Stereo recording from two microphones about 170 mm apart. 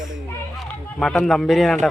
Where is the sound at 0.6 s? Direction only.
5° left (ahead or behind).